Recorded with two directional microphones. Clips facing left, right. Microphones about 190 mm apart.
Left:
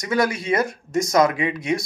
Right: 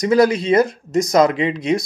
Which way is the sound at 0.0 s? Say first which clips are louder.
Right 8 dB; 25° right (ahead or behind).